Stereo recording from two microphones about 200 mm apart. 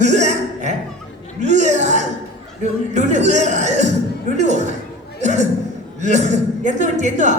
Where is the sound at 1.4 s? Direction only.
35° right (ahead or behind).